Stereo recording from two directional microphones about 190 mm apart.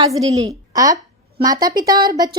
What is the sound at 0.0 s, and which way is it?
Speech, 20° right (ahead or behind).